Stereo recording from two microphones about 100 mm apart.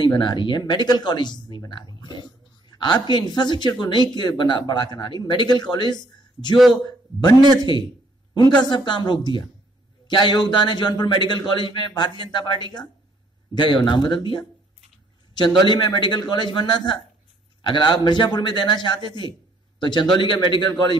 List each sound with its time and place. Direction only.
0.0 s speech: 45° left (ahead or behind)
2.0 s a sound: 45° left (ahead or behind)
2.7 s a man's voice: 45° left (ahead or behind)
8.4 s speech: 45° left (ahead or behind)